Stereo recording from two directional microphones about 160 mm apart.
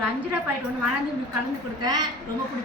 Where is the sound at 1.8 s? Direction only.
25° right (ahead or behind).